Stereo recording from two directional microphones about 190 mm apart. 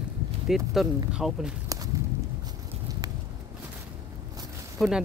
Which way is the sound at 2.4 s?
20° right (ahead or behind).